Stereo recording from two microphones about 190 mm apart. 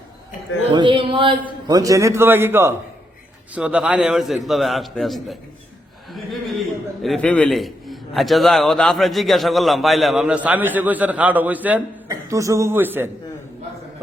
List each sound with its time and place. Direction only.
0.7 s a man's voice: 25° right (ahead or behind); by 5.4 s centre (ahead or behind)
7.0 s a man's voice: 5° left (ahead or behind)